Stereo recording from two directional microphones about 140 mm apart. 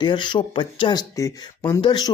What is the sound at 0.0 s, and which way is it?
Speech, 35° left (ahead or behind).